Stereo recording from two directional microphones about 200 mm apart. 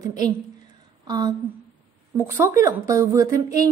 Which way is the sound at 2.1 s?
15° right (ahead or behind).